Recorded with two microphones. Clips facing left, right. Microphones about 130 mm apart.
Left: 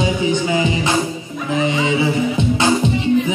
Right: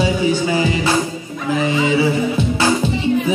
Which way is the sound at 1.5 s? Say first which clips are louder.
Right 1 dB; 20° left (ahead or behind).